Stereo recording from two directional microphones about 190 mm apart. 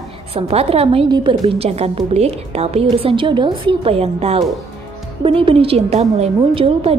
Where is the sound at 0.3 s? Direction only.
30° right (ahead or behind).